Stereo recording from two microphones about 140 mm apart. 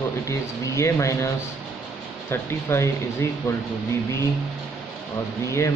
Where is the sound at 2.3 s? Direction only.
15° left (ahead or behind).